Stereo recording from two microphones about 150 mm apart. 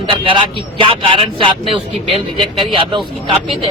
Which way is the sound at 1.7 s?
40° right (ahead or behind).